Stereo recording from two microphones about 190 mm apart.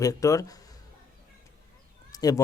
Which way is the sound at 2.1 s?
20° left (ahead or behind).